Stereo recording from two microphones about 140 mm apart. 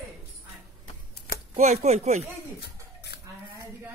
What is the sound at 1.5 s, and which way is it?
Speech, 55° right (ahead or behind).